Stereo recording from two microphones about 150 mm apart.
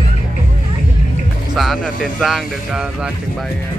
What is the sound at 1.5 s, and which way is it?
Speech, centre (ahead or behind).